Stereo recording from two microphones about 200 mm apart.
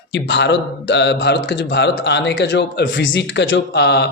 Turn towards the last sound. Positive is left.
turn(degrees=55)  # may be behind; listen again after turning